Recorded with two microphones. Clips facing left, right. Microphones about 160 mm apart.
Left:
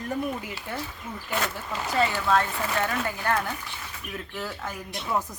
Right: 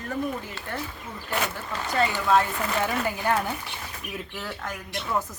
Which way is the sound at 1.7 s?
5° left (ahead or behind).